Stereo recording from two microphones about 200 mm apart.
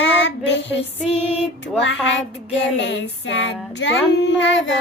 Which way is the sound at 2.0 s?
65° left (ahead or behind).